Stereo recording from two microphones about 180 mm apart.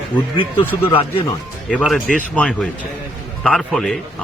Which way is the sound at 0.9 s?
30° left (ahead or behind).